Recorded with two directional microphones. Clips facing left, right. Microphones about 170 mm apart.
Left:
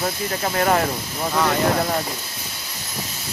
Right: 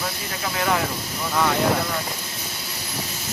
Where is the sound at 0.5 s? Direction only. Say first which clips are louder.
Left 4 dB; 45° left (ahead or behind).